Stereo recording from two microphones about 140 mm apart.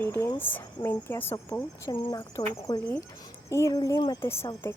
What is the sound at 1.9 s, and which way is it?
Speech, 35° left (ahead or behind).